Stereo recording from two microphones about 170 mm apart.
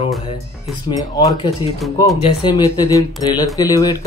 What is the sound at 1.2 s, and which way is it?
Speech, 20° left (ahead or behind).